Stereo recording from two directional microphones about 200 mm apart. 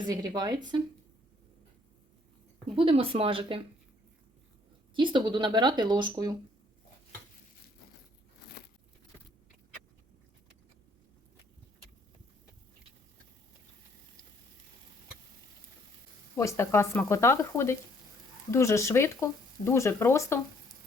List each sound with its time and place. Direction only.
0.0 s speech: 20° right (ahead or behind)
2.7 s speech: 25° right (ahead or behind)
4.9 s speech: 25° right (ahead or behind)
16.4 s speech: 15° left (ahead or behind)